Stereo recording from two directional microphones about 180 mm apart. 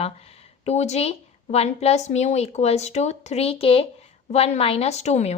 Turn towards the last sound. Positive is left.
turn(degrees=40)  # may be behind; listen again after turning